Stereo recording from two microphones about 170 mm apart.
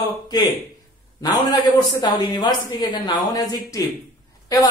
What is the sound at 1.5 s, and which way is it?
A man's voice, 25° left (ahead or behind).